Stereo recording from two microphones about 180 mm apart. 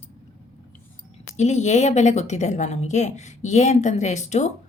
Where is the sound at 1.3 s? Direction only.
40° left (ahead or behind).